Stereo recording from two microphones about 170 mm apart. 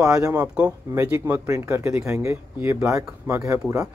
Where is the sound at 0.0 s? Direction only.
5° right (ahead or behind).